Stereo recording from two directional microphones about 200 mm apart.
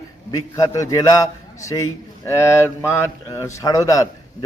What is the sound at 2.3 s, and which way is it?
A man's voice, 15° left (ahead or behind).